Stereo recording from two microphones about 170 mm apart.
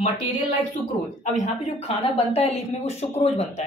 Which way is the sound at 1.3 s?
40° left (ahead or behind).